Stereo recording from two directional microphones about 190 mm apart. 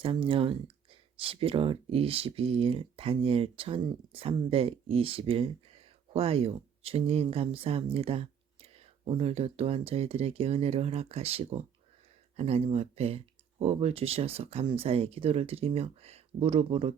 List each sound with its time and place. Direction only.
0.0 s speech: 30° right (ahead or behind)